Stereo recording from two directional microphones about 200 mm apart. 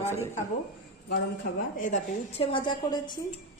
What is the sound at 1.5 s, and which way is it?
Speech, 55° left (ahead or behind).